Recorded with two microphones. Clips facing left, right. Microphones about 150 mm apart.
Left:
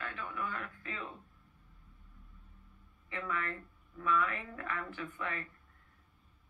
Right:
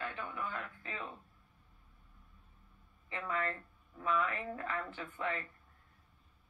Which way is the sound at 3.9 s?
25° right (ahead or behind).